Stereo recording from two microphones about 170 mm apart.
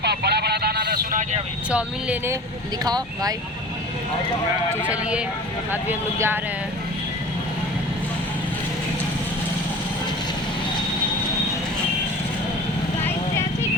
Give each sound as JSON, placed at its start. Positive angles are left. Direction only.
{"t": 0.0, "sound": "a sound", "side_deg": -75}
{"t": 1.7, "sound": "speech", "side_deg": -10}
{"t": 2.8, "sound": "speech", "side_deg": -20}
{"t": 4.7, "sound": "speech", "side_deg": -10}